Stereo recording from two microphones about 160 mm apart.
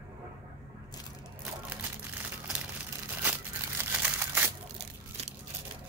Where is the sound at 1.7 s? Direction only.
10° right (ahead or behind).